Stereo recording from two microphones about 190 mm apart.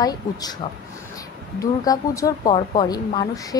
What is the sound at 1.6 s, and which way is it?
Speech, 15° left (ahead or behind).